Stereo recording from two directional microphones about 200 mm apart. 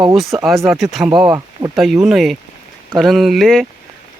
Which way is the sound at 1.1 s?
20° right (ahead or behind).